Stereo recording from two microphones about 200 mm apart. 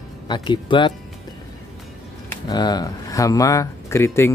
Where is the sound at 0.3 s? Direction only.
25° left (ahead or behind).